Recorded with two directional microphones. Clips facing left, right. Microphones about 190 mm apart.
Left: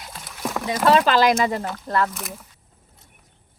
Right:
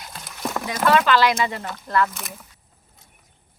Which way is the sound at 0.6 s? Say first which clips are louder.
Left 2 dB; 30° left (ahead or behind).